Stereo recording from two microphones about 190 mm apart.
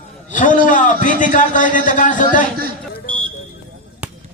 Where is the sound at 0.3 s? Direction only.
45° left (ahead or behind).